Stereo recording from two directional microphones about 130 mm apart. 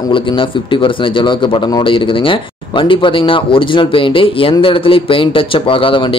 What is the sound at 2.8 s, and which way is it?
Speech, 40° left (ahead or behind).